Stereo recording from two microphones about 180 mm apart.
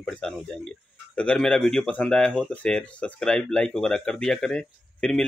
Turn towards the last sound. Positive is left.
turn(degrees=5)  # may be behind; listen again after turning